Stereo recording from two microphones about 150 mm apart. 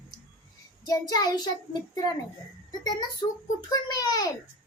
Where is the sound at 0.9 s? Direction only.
25° left (ahead or behind).